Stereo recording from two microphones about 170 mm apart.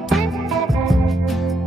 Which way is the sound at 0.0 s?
Centre (ahead or behind).